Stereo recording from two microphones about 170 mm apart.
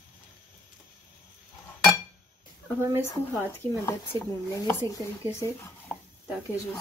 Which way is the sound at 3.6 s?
20° left (ahead or behind).